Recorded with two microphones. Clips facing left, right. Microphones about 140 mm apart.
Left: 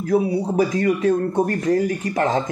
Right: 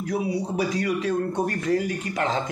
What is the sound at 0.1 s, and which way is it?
A man's voice, 50° left (ahead or behind).